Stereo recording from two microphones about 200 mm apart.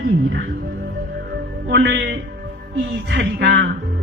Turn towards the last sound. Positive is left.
turn(degrees=-60)  # may be behind; listen again after turning